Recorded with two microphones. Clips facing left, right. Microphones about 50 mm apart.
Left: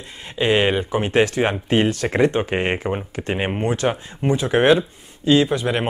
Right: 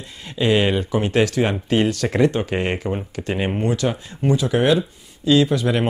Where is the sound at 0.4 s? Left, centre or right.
Left.